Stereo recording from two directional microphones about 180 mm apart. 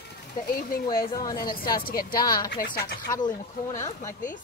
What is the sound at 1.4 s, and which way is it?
Speech, 55° left (ahead or behind).